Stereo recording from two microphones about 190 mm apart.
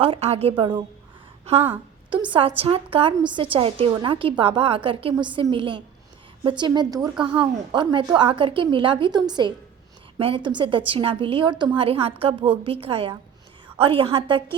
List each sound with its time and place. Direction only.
0.0 s a woman's voice: 30° right (ahead or behind)